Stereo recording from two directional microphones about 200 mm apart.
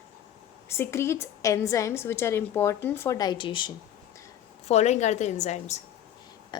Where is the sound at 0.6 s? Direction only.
10° left (ahead or behind); by 5.8 s 35° left (ahead or behind).